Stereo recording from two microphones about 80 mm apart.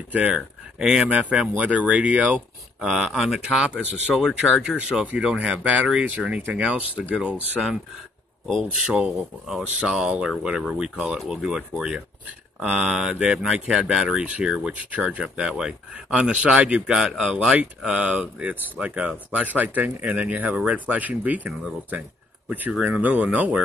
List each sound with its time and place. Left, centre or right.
0.1 s speech: centre
8.8 s speech: centre
22.5 s speech: centre